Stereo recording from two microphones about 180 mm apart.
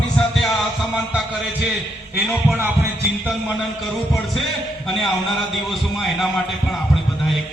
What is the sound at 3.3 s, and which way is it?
A man's voice, centre (ahead or behind).